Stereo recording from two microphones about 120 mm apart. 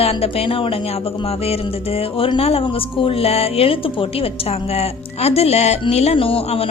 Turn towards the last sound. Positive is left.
turn(degrees=55)  # may be behind; listen again after turning